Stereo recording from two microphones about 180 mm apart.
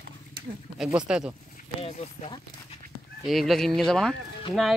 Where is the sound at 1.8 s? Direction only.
30° left (ahead or behind).